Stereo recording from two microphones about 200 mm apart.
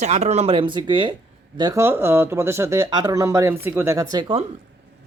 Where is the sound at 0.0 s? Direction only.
35° right (ahead or behind).